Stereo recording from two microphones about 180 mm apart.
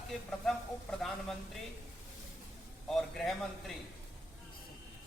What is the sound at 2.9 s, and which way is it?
Speech, centre (ahead or behind).